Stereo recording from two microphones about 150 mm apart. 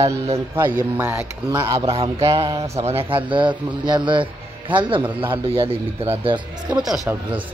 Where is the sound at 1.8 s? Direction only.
40° right (ahead or behind).